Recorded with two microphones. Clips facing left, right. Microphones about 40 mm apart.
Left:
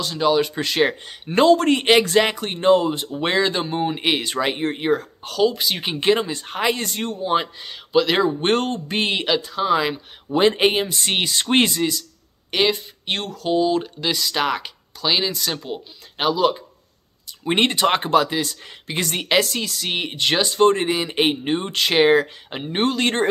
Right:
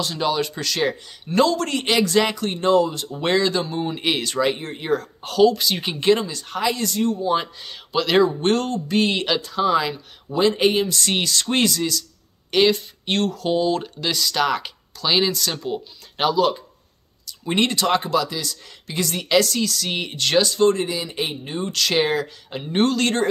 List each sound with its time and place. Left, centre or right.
0.0 s speech: centre
0.6 s speech: left
5.2 s speech: centre
5.5 s speech: centre; by 7.2 s left
7.6 s speech: centre
8.4 s speech: left
9.2 s speech: centre
10.3 s speech: left
12.4 s speech: centre
17.5 s speech: left
20.4 s speech: left; by 23.1 s centre